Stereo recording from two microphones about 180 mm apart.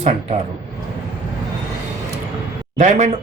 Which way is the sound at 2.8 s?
40° right (ahead or behind).